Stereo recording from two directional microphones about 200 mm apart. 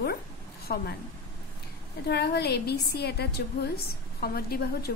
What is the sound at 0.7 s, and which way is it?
Speech, 50° left (ahead or behind).